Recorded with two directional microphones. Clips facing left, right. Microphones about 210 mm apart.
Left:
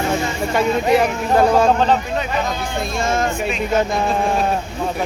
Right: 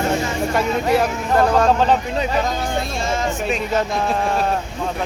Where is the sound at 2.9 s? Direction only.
50° left (ahead or behind).